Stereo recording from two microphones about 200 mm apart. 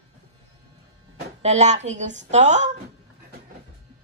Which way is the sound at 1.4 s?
35° right (ahead or behind).